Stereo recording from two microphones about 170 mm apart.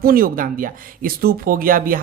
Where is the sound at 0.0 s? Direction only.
60° right (ahead or behind).